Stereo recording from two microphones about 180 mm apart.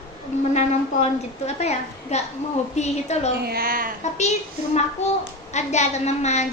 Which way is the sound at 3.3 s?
60° right (ahead or behind).